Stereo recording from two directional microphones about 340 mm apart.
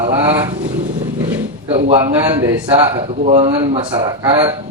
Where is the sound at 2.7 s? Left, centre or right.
Centre.